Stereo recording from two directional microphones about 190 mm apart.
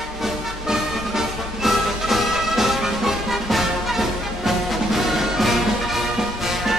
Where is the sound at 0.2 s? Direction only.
Centre (ahead or behind).